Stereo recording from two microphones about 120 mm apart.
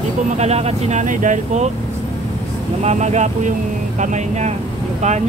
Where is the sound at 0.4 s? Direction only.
65° right (ahead or behind); by 1.7 s 90° right.